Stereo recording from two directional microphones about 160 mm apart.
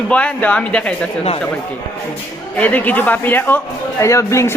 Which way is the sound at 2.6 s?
10° left (ahead or behind).